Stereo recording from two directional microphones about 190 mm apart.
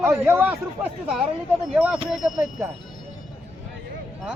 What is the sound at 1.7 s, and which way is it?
Speech, 5° right (ahead or behind).